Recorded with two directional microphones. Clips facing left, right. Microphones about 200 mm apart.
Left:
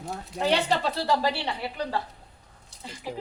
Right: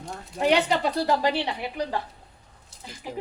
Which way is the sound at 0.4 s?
15° right (ahead or behind).